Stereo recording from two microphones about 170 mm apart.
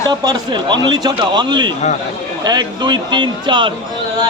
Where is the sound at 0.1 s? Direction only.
25° right (ahead or behind).